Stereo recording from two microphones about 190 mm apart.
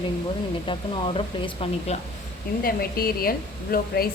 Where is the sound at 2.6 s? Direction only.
50° left (ahead or behind).